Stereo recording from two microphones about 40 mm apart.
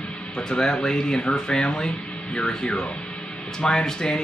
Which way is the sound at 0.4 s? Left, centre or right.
Centre.